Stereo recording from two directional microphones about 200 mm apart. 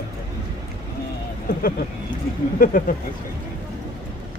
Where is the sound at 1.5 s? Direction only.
45° left (ahead or behind).